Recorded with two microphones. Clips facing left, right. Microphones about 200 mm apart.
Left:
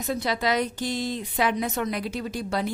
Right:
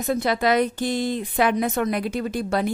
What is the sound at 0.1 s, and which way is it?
A woman's voice, 55° right (ahead or behind).